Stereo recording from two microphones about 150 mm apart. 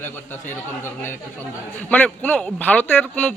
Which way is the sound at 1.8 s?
10° left (ahead or behind).